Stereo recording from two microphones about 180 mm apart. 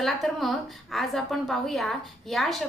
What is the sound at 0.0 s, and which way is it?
A woman's voice, centre (ahead or behind).